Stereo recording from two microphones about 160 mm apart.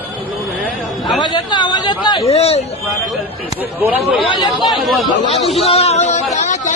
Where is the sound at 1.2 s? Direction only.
25° left (ahead or behind).